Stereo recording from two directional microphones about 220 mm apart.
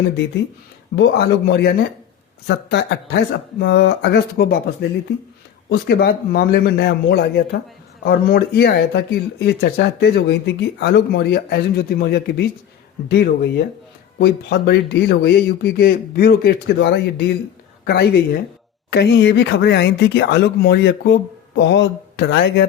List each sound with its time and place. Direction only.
0.9 s speech: 50° left (ahead or behind)